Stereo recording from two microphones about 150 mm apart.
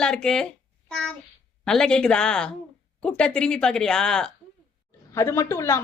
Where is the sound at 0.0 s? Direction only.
5° left (ahead or behind).